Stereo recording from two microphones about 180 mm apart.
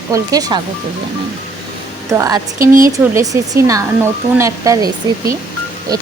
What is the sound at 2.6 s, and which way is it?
Speech, 50° right (ahead or behind).